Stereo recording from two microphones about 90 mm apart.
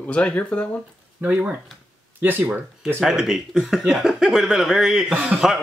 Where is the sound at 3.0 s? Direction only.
5° right (ahead or behind).